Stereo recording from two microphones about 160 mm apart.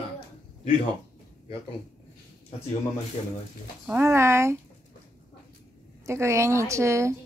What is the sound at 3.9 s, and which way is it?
Speech, 15° right (ahead or behind).